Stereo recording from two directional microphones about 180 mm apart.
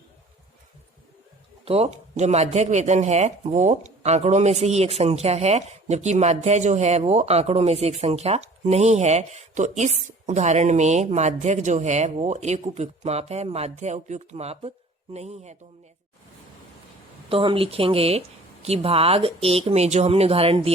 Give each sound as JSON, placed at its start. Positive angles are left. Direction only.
{"t": 1.6, "sound": "speech", "side_deg": -35}
{"t": 17.2, "sound": "speech", "side_deg": -30}